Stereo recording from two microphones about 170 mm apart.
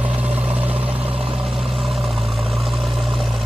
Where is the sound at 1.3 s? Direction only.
5° right (ahead or behind).